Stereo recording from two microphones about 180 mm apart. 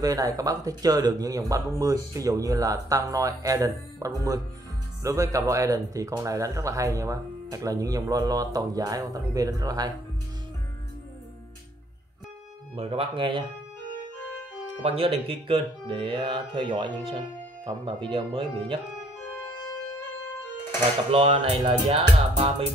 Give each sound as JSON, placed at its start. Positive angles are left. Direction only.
{"t": 0.0, "sound": "speech", "side_deg": -20}
{"t": 12.7, "sound": "music", "side_deg": -30}
{"t": 14.8, "sound": "speech", "side_deg": -35}
{"t": 21.1, "sound": "music", "side_deg": -30}